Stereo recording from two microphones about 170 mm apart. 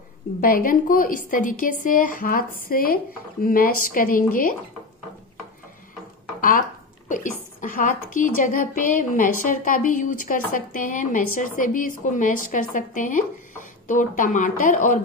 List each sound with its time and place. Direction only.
0.4 s a woman's voice: 55° left (ahead or behind)
7.1 s a woman's voice: 50° left (ahead or behind)